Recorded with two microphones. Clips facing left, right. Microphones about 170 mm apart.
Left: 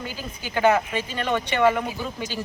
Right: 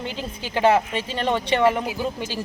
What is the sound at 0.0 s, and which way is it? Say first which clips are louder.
Speech: right 3 dB; 25° right (ahead or behind).